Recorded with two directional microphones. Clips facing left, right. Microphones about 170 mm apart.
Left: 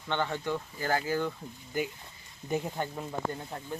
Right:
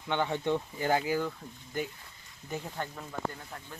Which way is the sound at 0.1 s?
15° right (ahead or behind).